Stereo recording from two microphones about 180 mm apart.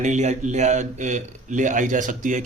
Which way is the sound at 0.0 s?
40° right (ahead or behind).